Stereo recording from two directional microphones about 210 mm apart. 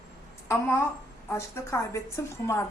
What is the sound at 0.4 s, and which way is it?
A woman's voice, 10° left (ahead or behind).